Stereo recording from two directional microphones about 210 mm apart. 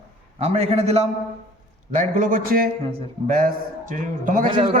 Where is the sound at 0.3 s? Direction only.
30° right (ahead or behind).